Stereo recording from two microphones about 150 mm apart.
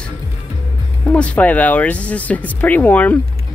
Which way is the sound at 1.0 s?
10° left (ahead or behind).